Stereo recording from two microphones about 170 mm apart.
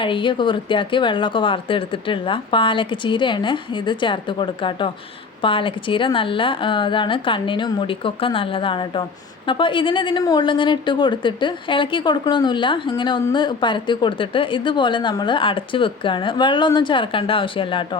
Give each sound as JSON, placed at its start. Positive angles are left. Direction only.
{"t": 0.0, "sound": "speech", "side_deg": 30}